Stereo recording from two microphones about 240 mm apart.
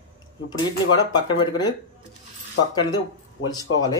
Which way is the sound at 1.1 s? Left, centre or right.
Centre.